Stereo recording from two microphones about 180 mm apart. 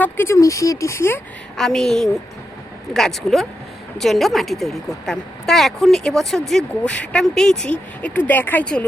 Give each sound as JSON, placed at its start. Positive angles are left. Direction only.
{"t": 0.0, "sound": "speech", "side_deg": 15}
{"t": 1.5, "sound": "a woman's voice", "side_deg": 5}